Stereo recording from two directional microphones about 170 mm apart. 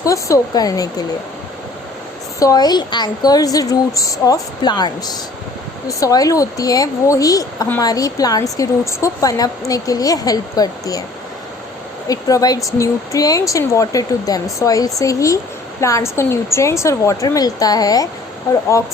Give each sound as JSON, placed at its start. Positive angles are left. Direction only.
{"t": 0.0, "sound": "speech", "side_deg": 20}
{"t": 2.4, "sound": "speech", "side_deg": 20}
{"t": 12.0, "sound": "a woman's voice", "side_deg": 20}